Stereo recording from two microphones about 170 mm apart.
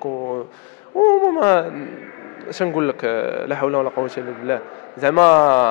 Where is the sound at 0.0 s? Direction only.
35° left (ahead or behind).